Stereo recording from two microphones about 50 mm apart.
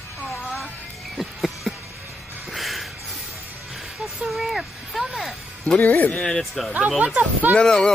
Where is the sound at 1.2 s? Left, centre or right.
Centre.